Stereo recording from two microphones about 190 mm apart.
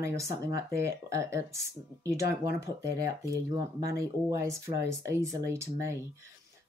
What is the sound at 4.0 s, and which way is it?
Speech, 15° right (ahead or behind).